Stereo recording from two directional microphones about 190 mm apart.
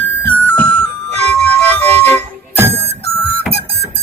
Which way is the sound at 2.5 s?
10° right (ahead or behind).